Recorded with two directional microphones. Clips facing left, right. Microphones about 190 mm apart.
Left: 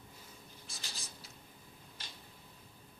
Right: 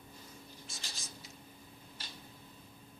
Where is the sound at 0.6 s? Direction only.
35° left (ahead or behind).